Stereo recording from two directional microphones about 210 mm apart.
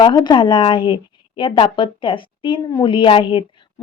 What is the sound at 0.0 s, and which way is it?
A woman's voice, 20° left (ahead or behind).